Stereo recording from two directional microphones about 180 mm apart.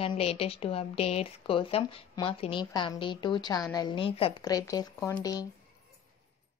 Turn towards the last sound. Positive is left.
turn(degrees=20)  # may be behind; listen again after turning